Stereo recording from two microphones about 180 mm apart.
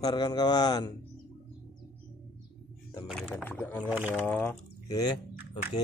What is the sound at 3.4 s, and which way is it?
Speech, 10° left (ahead or behind).